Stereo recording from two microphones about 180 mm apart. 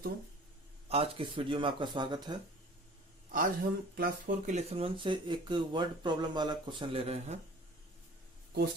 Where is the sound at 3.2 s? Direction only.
50° right (ahead or behind).